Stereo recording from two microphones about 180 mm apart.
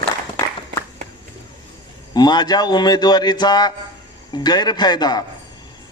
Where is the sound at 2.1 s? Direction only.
25° left (ahead or behind).